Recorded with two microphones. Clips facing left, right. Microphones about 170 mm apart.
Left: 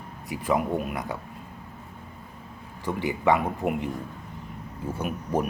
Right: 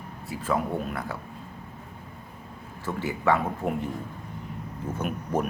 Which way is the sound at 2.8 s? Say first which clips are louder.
Left 2 dB; 15° left (ahead or behind).